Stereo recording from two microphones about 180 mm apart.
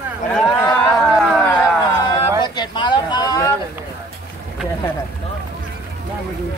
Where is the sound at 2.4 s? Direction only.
25° left (ahead or behind).